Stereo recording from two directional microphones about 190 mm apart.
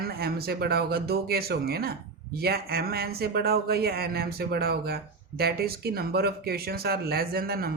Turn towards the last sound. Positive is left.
turn(degrees=-55)  # may be behind; listen again after turning